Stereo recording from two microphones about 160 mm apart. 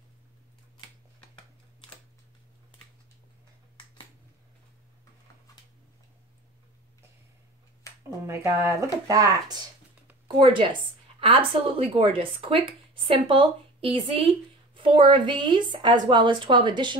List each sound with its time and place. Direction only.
8.3 s a woman's voice: 20° right (ahead or behind)